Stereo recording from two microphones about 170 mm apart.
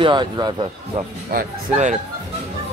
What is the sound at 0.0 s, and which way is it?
Speech, 30° right (ahead or behind).